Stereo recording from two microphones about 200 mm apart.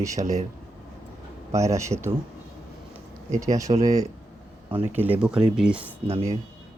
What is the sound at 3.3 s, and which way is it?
Speech, 15° right (ahead or behind).